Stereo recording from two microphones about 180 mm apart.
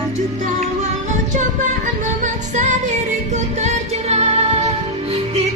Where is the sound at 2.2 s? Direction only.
40° right (ahead or behind).